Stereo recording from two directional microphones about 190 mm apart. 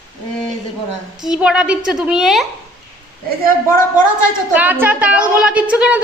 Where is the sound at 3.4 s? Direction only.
45° right (ahead or behind).